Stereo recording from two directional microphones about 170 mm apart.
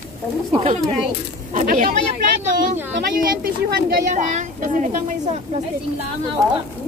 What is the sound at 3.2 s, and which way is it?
Speech, 60° right (ahead or behind).